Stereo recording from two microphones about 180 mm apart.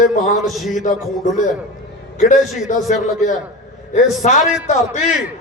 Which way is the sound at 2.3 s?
Centre (ahead or behind).